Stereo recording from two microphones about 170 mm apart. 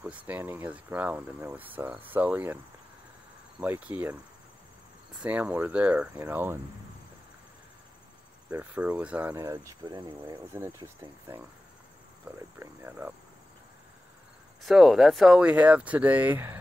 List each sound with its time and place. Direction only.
0.0 s speech: 10° right (ahead or behind)
5.2 s speech: 10° right (ahead or behind)
8.5 s speech: 10° right (ahead or behind)
9.4 s speech: 20° right (ahead or behind)
10.5 s speech: 15° right (ahead or behind)
14.6 s speech: centre (ahead or behind)